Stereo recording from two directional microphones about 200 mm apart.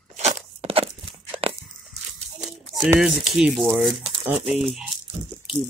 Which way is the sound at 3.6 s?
15° right (ahead or behind).